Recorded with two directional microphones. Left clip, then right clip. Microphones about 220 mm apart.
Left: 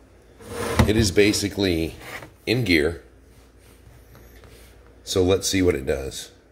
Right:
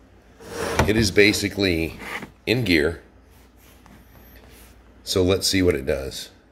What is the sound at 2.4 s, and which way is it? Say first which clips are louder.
Speech: even; 10° right (ahead or behind).